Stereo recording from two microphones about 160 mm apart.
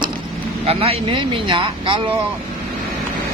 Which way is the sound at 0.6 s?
40° right (ahead or behind).